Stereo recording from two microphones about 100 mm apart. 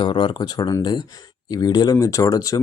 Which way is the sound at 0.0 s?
55° left (ahead or behind).